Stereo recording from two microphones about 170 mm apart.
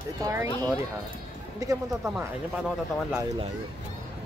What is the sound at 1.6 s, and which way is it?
Speech, 20° right (ahead or behind).